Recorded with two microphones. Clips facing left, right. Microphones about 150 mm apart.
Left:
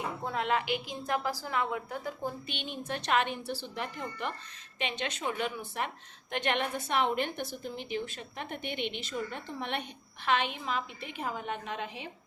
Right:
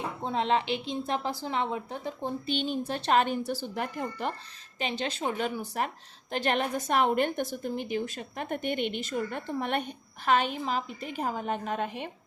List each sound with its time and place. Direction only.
0.3 s a woman's voice: 25° right (ahead or behind); by 12.1 s 50° right (ahead or behind)